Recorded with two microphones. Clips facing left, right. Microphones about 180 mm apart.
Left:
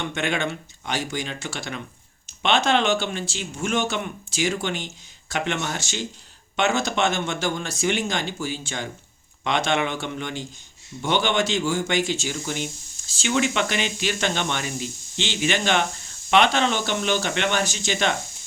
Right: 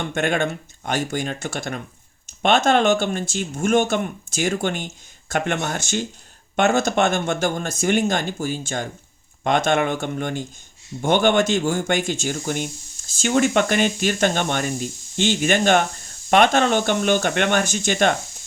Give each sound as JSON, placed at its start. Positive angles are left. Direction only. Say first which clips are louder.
{"t": 0.0, "sound": "speech", "louder": "right 4 dB", "side_deg": -50}